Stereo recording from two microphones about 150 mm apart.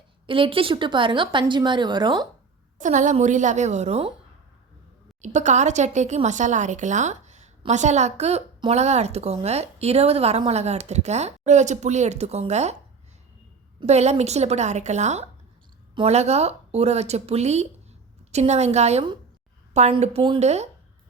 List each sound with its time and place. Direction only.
0.3 s speech: 35° right (ahead or behind)
2.7 s a woman's voice: 55° right (ahead or behind)
5.2 s a woman's voice: 50° right (ahead or behind)
13.8 s a woman's voice: 45° right (ahead or behind)